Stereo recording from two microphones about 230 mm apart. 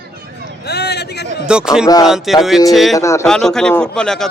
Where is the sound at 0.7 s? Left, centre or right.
Left.